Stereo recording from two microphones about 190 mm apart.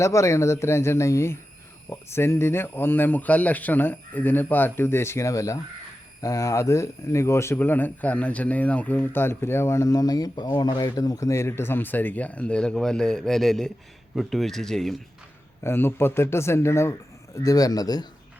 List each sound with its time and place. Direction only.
0.0 s speech: 15° left (ahead or behind)
15.6 s a man's voice: 10° left (ahead or behind)